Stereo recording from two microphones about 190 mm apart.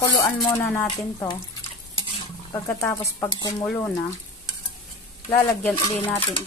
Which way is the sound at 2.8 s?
15° left (ahead or behind).